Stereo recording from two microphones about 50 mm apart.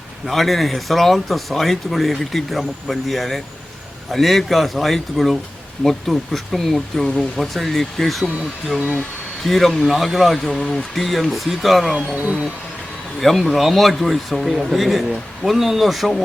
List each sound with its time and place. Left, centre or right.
0.3 s speech: centre
12.1 s speech: right
13.1 s speech: centre